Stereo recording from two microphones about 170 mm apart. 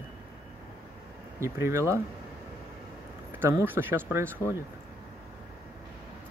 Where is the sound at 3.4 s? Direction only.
15° right (ahead or behind).